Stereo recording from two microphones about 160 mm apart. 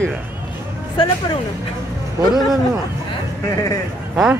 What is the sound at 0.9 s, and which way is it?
Speech, 30° left (ahead or behind).